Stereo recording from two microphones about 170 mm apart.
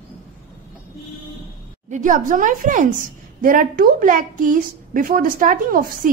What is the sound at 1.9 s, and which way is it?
A woman's voice, 45° right (ahead or behind).